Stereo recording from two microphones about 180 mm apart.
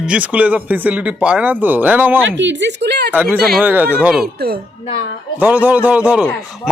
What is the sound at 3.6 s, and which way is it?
Speech, 10° right (ahead or behind).